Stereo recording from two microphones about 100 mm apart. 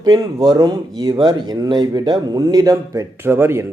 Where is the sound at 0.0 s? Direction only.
40° right (ahead or behind).